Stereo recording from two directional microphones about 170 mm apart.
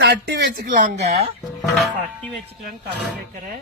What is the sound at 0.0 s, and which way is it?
Speech, 85° right.